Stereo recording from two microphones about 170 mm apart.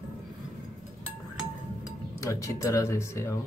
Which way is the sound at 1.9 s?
20° left (ahead or behind).